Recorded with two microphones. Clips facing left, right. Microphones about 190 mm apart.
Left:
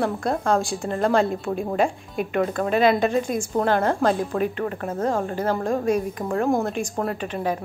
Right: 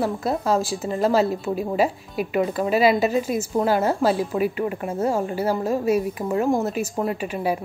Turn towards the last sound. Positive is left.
turn(degrees=-10)  # may be behind; listen again after turning